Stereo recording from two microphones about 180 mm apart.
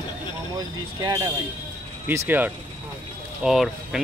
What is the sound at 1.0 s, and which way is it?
A man's voice, 20° right (ahead or behind).